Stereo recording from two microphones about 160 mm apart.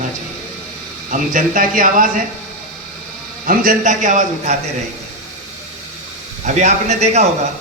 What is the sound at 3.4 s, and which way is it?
A man's voice, 60° right (ahead or behind).